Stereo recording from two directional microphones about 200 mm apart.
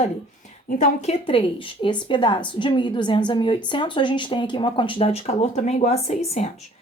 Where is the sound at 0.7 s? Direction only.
35° left (ahead or behind).